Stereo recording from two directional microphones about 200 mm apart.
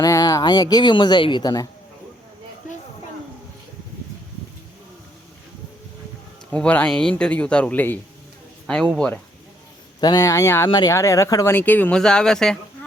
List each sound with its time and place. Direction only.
0.0 s speech: 15° left (ahead or behind)
6.5 s speech: 5° left (ahead or behind)
10.0 s speech: 20° left (ahead or behind); by 12.5 s 5° left (ahead or behind)